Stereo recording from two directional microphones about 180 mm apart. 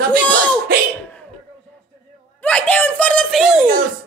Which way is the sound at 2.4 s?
5° left (ahead or behind).